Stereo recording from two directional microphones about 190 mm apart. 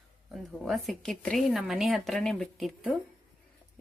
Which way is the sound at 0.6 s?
Centre (ahead or behind).